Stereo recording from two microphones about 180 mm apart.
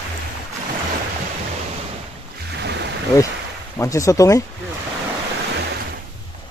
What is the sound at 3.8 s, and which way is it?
Speech, 20° left (ahead or behind).